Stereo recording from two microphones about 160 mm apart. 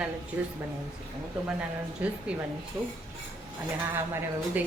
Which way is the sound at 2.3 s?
5° right (ahead or behind).